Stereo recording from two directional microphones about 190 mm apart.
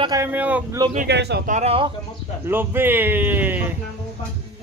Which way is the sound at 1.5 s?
30° right (ahead or behind).